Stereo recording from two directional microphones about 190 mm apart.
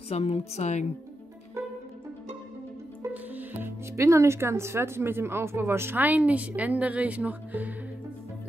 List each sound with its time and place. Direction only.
0.1 s a woman's voice: 35° left (ahead or behind)
3.0 s speech: 10° right (ahead or behind)